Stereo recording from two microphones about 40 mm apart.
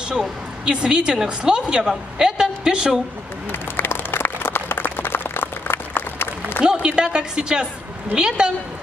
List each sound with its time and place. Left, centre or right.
0.7 s a woman's voice: centre
3.7 s a sound: left
6.6 s a woman's voice: centre